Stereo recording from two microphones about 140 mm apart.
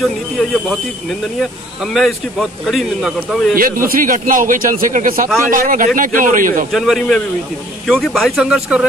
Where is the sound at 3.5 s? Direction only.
85° right.